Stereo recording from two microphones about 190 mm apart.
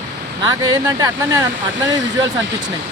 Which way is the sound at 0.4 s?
20° right (ahead or behind).